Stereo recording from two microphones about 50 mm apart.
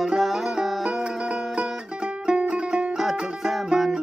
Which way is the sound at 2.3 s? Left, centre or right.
Centre.